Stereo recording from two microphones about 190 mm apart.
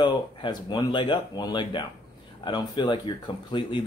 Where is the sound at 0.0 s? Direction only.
25° left (ahead or behind).